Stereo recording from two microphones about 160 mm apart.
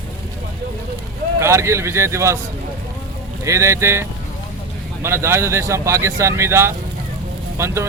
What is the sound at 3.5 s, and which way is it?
Speech, 15° right (ahead or behind).